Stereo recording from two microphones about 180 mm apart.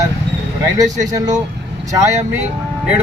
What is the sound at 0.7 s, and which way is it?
Speech, 20° right (ahead or behind).